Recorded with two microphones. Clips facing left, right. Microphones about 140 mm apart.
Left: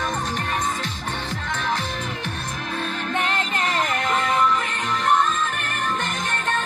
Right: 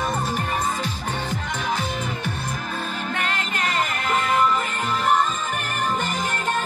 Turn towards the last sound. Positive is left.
turn(degrees=-10)  # may be behind; listen again after turning